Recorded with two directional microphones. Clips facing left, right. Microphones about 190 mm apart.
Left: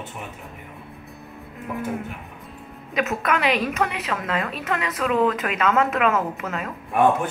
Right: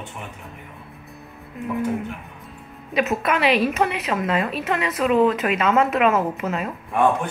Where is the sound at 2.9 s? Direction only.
10° right (ahead or behind).